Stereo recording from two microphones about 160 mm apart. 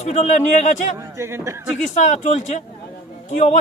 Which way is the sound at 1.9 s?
45° left (ahead or behind).